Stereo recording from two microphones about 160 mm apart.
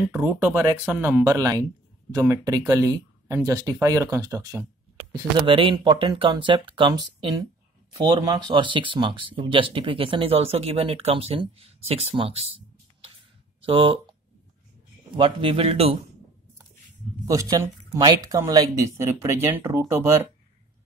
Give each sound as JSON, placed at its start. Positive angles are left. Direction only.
{"t": 0.1, "sound": "speech", "side_deg": -15}
{"t": 5.4, "sound": "speech", "side_deg": -35}
{"t": 8.4, "sound": "speech", "side_deg": -30}
{"t": 15.1, "sound": "speech", "side_deg": -35}
{"t": 17.3, "sound": "speech", "side_deg": -20}